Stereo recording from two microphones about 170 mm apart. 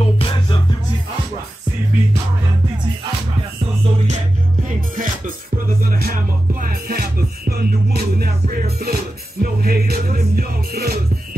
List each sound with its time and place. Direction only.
0.0 s music: 30° left (ahead or behind)
4.6 s music: 50° right (ahead or behind)